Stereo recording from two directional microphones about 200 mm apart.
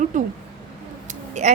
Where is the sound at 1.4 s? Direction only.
35° right (ahead or behind).